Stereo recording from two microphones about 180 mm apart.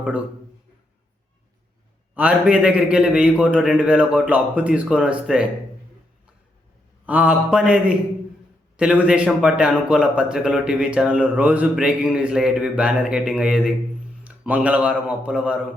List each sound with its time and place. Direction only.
2.1 s a man's voice: 5° right (ahead or behind)
7.0 s a man's voice: 10° right (ahead or behind)